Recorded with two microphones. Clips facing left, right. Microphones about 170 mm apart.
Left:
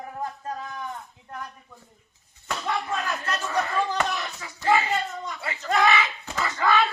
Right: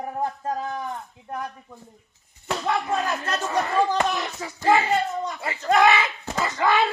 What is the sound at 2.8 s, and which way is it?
Speech, 25° right (ahead or behind).